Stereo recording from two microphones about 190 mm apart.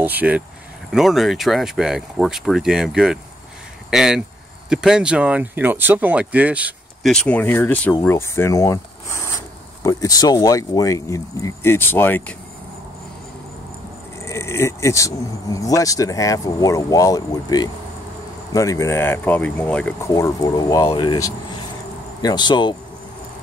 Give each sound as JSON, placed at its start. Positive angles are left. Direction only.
{"t": 0.0, "sound": "speech", "side_deg": -10}
{"t": 14.2, "sound": "speech", "side_deg": 15}
{"t": 20.1, "sound": "speech", "side_deg": 15}